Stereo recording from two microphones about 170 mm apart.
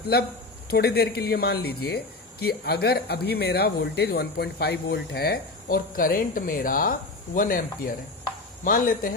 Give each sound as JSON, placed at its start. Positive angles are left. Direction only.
{"t": 0.1, "sound": "speech", "side_deg": 70}